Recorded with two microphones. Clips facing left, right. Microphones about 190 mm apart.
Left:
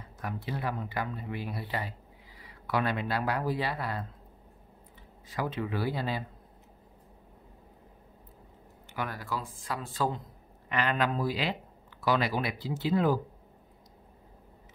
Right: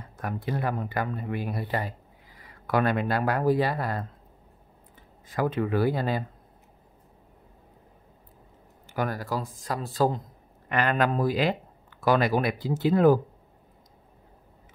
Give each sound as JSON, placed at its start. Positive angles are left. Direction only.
{"t": 0.2, "sound": "speech", "side_deg": -50}
{"t": 5.3, "sound": "speech", "side_deg": -50}
{"t": 8.9, "sound": "speech", "side_deg": -40}